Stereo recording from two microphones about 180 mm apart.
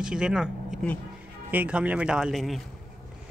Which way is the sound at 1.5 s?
10° right (ahead or behind).